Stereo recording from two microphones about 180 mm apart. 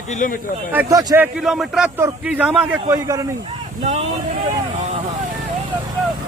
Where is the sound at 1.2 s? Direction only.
5° right (ahead or behind).